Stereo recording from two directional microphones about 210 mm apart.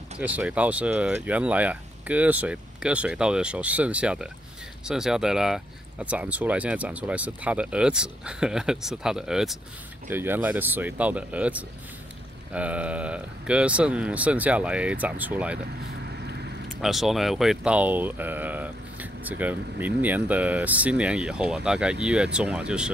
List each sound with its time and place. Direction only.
0.2 s speech: 5° right (ahead or behind)
16.1 s vehicle: 50° right (ahead or behind)
16.8 s speech: centre (ahead or behind)